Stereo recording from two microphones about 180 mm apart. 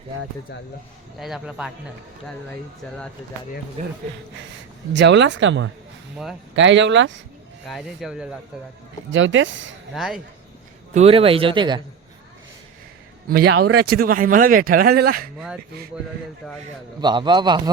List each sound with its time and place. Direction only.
1.2 s speech: 5° right (ahead or behind)
3.8 s speech: 40° right (ahead or behind)
4.9 s speech: 80° right
7.7 s speech: centre (ahead or behind)
9.1 s speech: 90° right
9.9 s speech: centre (ahead or behind)
10.9 s speech: 35° right (ahead or behind)
13.2 s speech: 60° right (ahead or behind)
17.0 s a man's voice: 25° right (ahead or behind)